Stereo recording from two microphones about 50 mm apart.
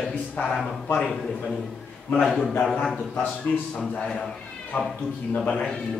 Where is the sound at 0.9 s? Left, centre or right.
Centre.